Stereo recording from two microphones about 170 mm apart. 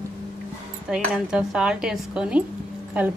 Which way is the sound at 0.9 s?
5° right (ahead or behind).